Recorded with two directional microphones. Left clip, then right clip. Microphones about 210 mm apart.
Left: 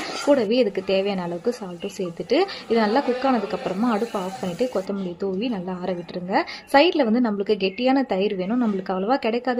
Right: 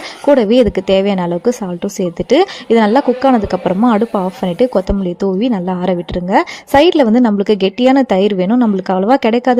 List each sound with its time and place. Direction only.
0.3 s speech: 40° right (ahead or behind)